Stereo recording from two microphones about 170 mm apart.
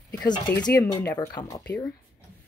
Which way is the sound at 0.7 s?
20° left (ahead or behind).